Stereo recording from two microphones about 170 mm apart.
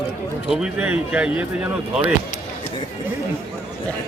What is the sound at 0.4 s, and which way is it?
Speech, 5° right (ahead or behind).